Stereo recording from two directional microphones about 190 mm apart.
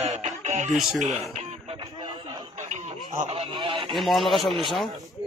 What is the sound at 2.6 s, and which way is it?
Radio, 35° right (ahead or behind).